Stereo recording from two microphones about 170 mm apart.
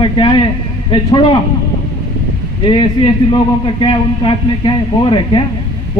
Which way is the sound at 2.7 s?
30° left (ahead or behind).